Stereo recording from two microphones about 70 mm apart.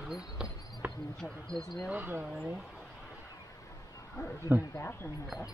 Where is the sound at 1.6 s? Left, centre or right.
Left.